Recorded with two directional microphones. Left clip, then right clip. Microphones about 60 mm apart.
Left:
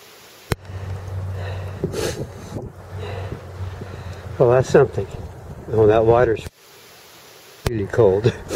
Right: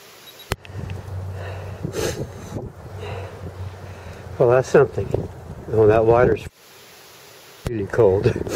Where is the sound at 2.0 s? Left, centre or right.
Centre.